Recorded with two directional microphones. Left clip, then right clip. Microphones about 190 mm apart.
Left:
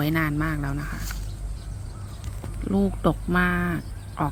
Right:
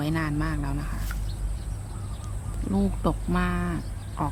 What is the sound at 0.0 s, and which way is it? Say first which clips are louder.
Speech: left 4 dB; 15° left (ahead or behind).